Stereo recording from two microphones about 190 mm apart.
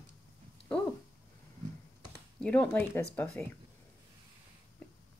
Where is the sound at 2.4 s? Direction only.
5° left (ahead or behind).